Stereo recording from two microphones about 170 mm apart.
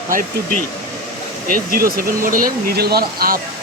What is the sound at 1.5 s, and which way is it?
Speech, 60° right (ahead or behind).